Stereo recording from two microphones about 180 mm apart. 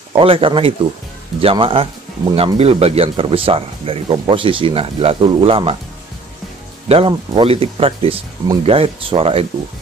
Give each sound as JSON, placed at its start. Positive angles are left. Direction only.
{"t": 0.1, "sound": "speech", "side_deg": -30}
{"t": 6.9, "sound": "speech", "side_deg": -30}